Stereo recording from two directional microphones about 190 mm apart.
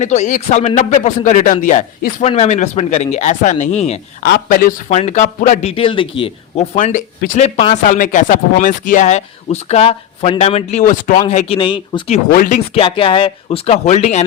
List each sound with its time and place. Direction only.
0.0 s speech: 40° left (ahead or behind)
4.2 s speech: 50° left (ahead or behind); by 6.7 s 30° left (ahead or behind)
6.7 s speech: 45° left (ahead or behind)
12.3 s speech: 45° left (ahead or behind)
12.8 s speech: 30° left (ahead or behind)